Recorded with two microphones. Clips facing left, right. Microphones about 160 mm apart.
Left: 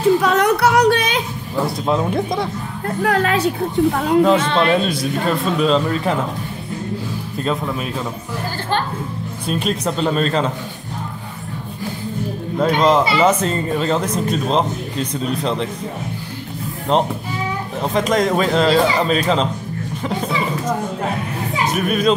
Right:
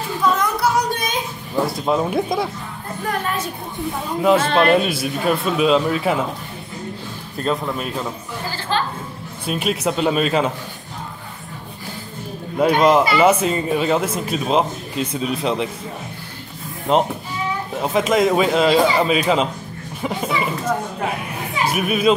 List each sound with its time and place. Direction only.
0.2 s a sound: 70° left (ahead or behind)
1.9 s speech: 5° right (ahead or behind)
3.0 s speech: 85° left
4.4 s a man's voice: 50° right (ahead or behind)
4.6 s speech: 5° right (ahead or behind)
7.4 s speech: centre (ahead or behind)
9.5 s speech: 5° right (ahead or behind)
12.5 s speech: 10° right (ahead or behind)
16.9 s speech: 5° right (ahead or behind)
21.6 s speech: 10° right (ahead or behind)